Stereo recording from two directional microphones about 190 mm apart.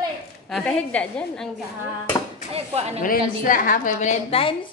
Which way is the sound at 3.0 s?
45° left (ahead or behind).